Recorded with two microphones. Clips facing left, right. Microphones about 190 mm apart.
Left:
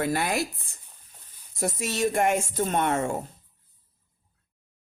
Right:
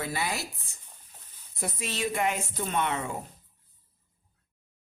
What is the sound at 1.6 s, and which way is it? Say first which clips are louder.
Speech: left 6 dB; 45° left (ahead or behind).